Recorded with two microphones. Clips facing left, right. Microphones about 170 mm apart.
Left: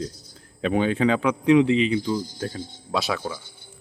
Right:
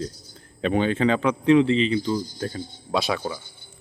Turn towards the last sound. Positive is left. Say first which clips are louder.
# right 1 dB
turn(degrees=0)  # may be behind; listen again after turning